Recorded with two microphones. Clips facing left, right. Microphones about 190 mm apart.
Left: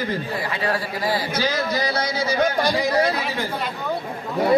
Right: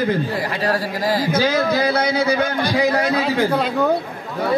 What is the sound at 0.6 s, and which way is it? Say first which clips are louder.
Speech: right 3 dB; 40° right (ahead or behind).